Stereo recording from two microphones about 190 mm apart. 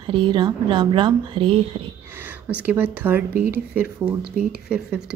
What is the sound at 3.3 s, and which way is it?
Speech, 50° right (ahead or behind).